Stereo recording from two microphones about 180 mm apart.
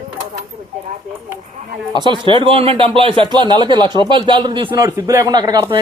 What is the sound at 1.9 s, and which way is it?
Speech, 25° right (ahead or behind).